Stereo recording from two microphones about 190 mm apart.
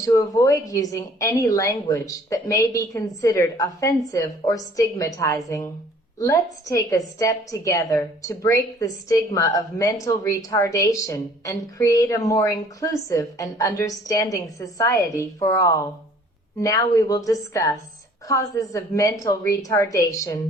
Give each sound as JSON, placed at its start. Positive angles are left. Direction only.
{"t": 0.0, "sound": "a woman's voice", "side_deg": 15}